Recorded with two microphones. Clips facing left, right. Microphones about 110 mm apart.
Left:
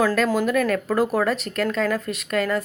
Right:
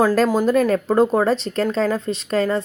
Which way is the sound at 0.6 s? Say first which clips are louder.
Right 5 dB; 30° right (ahead or behind).